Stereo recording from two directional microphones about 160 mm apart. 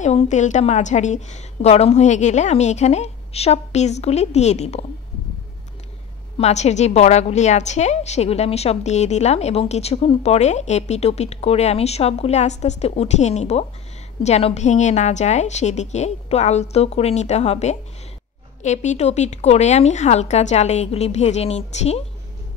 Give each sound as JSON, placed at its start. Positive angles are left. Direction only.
{"t": 0.0, "sound": "a woman's voice", "side_deg": 50}
{"t": 6.3, "sound": "a woman's voice", "side_deg": 45}